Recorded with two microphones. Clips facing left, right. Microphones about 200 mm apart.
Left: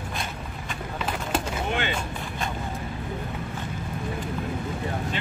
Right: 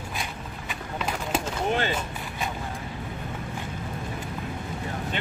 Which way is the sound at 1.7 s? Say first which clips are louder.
Right 3 dB; 40° right (ahead or behind).